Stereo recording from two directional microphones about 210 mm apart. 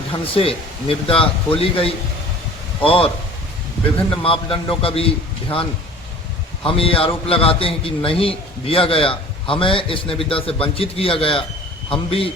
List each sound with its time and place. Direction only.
0.3 s a man's voice: 25° left (ahead or behind)
4.2 s a man's voice: 25° left (ahead or behind)
6.7 s a man's voice: 25° left (ahead or behind)